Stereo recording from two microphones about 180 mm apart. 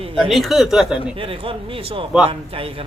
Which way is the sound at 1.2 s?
30° right (ahead or behind).